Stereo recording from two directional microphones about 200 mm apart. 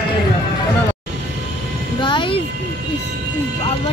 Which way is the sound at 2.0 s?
25° left (ahead or behind).